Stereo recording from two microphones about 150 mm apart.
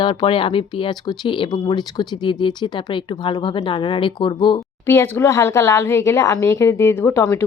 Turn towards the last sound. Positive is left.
turn(degrees=20)  # may be behind; listen again after turning